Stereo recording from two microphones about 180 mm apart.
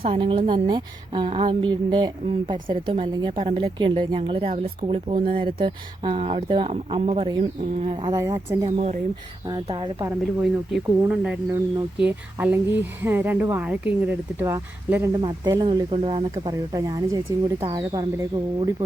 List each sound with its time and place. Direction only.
0.0 s a woman's voice: 30° right (ahead or behind)
8.1 s a woman's voice: 20° right (ahead or behind)
8.7 s speech: 40° right (ahead or behind)
9.6 s a woman's voice: 25° right (ahead or behind)
10.7 s a woman's voice: 5° right (ahead or behind)